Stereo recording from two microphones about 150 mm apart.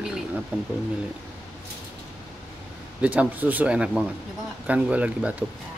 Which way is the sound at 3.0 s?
10° right (ahead or behind).